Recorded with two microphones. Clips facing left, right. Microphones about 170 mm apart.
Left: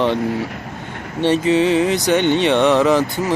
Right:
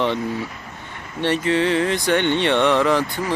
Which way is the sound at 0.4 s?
65° left (ahead or behind).